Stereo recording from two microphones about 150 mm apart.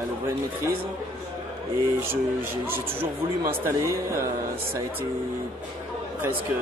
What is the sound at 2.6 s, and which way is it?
Speech, 15° right (ahead or behind).